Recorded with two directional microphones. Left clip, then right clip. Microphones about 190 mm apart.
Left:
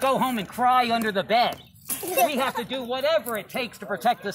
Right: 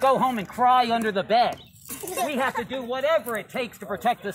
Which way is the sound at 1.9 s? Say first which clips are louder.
Left 5 dB; 50° left (ahead or behind).